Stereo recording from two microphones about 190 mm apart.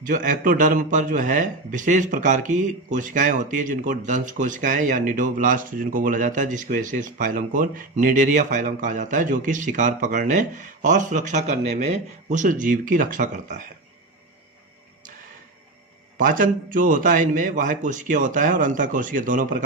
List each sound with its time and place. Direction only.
0.0 s a man's voice: 45° right (ahead or behind)
16.1 s a man's voice: 45° right (ahead or behind)